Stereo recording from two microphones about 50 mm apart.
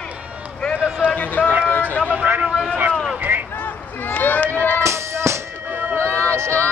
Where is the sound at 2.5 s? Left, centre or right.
Right.